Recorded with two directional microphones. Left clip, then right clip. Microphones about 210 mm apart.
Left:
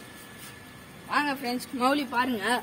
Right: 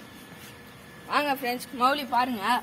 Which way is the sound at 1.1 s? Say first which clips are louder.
Right 1 dB; 45° right (ahead or behind).